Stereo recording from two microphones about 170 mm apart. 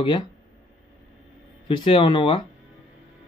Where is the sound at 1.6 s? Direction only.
30° left (ahead or behind).